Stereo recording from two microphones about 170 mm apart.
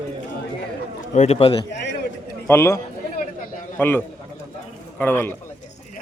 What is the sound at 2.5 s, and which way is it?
Speech, 15° left (ahead or behind).